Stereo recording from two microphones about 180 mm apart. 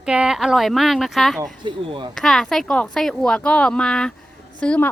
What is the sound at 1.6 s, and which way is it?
Speech, 25° right (ahead or behind).